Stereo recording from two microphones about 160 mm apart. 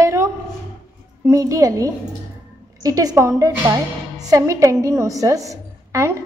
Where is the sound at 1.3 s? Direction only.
20° right (ahead or behind).